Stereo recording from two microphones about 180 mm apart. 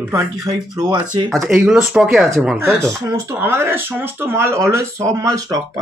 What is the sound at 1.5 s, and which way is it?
Speech, 10° right (ahead or behind).